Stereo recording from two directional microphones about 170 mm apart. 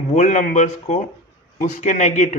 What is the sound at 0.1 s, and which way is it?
Speech, 45° left (ahead or behind).